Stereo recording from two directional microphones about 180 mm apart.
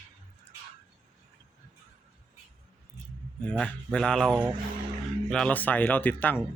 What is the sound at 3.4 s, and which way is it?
A man's voice, 5° left (ahead or behind).